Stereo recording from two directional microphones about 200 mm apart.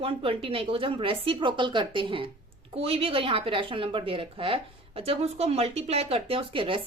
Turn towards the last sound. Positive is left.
turn(degrees=-25)  # may be behind; listen again after turning